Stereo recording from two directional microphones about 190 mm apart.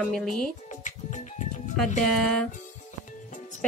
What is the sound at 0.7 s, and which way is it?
Music, 40° left (ahead or behind).